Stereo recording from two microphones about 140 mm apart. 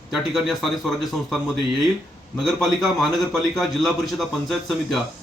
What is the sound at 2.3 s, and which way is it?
A man's voice, centre (ahead or behind).